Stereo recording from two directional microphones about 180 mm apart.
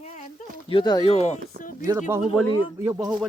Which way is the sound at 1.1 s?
35° left (ahead or behind).